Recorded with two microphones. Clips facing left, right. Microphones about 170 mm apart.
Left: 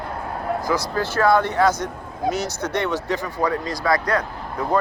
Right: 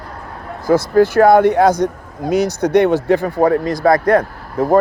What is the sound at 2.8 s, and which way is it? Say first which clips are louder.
A man's voice: right 11 dB; 55° right (ahead or behind).